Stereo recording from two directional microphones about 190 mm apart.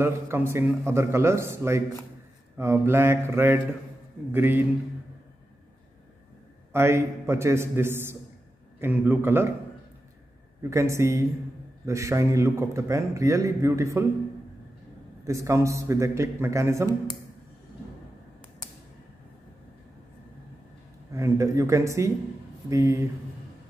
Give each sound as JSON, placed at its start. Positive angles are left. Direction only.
{"t": 0.0, "sound": "a man's voice", "side_deg": -10}
{"t": 6.7, "sound": "a man's voice", "side_deg": -15}
{"t": 10.6, "sound": "a man's voice", "side_deg": -15}
{"t": 15.2, "sound": "a man's voice", "side_deg": -15}
{"t": 21.1, "sound": "a man's voice", "side_deg": -15}